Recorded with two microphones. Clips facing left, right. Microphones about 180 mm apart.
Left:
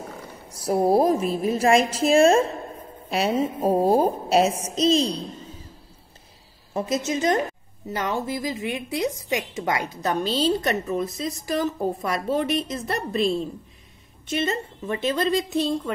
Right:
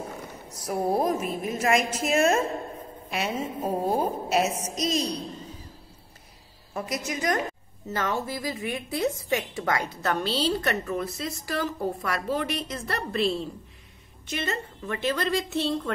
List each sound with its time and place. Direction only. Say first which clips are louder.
0.7 s a woman's voice: left 6 dB; 30° left (ahead or behind)
6.7 s a woman's voice: left 6 dB; 25° left (ahead or behind)